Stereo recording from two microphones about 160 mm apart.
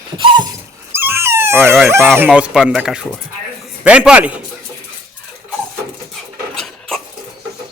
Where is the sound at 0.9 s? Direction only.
15° right (ahead or behind).